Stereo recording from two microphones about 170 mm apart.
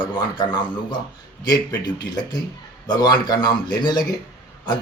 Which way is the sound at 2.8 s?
25° left (ahead or behind).